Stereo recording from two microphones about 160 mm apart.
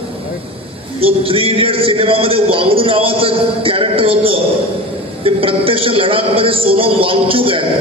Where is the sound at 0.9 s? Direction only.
35° right (ahead or behind).